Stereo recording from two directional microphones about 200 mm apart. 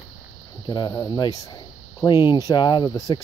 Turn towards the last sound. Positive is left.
turn(degrees=20)  # may be behind; listen again after turning